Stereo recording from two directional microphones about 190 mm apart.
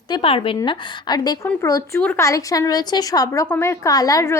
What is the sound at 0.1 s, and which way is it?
A woman's voice, 30° left (ahead or behind).